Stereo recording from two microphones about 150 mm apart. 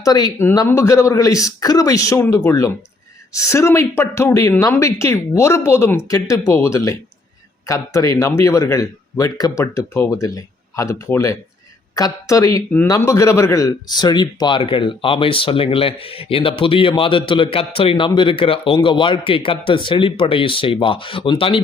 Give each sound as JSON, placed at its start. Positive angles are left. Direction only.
{"t": 0.0, "sound": "speech", "side_deg": 25}